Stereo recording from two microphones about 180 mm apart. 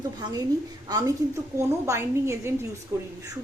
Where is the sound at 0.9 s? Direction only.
20° right (ahead or behind).